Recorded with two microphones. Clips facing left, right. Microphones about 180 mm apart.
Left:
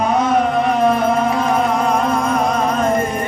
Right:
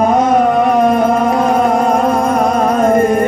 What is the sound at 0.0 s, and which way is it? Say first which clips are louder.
Music: right 5 dB; 45° right (ahead or behind).